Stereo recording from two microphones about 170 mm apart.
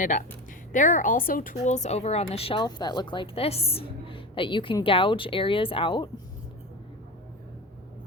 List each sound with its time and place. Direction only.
0.7 s speech: 50° left (ahead or behind); by 6.1 s 30° left (ahead or behind)